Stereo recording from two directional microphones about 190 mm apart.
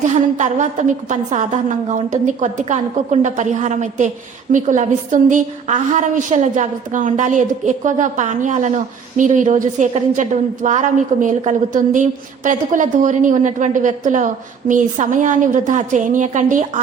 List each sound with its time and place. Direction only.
0.0 s a woman's voice: 40° right (ahead or behind)